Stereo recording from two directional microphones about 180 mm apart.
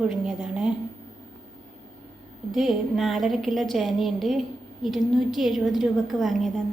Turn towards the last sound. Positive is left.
turn(degrees=0)  # may be behind; listen again after turning